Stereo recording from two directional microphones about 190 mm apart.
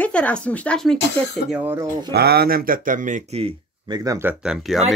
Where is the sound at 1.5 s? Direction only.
10° right (ahead or behind).